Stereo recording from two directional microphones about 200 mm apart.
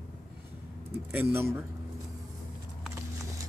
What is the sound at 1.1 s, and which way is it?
Speech, 10° right (ahead or behind).